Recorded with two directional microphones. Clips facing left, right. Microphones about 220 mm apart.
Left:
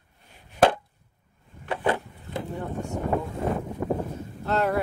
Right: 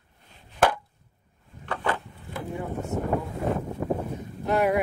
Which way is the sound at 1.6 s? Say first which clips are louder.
Left 3 dB; 15° left (ahead or behind).